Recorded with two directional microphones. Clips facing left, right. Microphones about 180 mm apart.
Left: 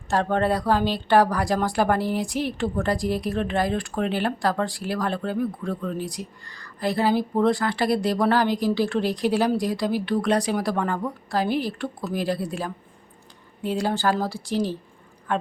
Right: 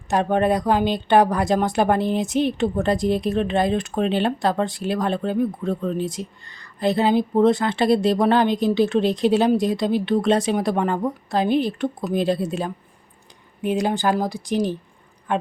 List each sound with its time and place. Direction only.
0.1 s speech: 15° right (ahead or behind)